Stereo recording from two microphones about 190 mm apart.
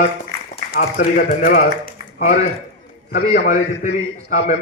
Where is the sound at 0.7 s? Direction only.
50° left (ahead or behind).